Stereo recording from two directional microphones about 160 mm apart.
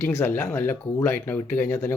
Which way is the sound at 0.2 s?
15° left (ahead or behind).